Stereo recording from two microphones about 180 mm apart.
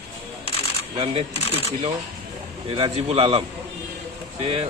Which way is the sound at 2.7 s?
30° right (ahead or behind).